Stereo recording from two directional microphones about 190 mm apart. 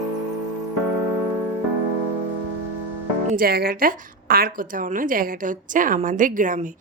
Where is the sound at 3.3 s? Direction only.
50° right (ahead or behind).